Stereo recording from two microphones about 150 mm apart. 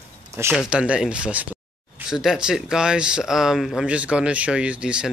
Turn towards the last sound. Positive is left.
turn(degrees=-5)  # may be behind; listen again after turning